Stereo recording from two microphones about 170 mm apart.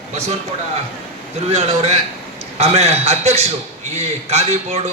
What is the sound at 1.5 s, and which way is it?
A man's voice, 40° right (ahead or behind).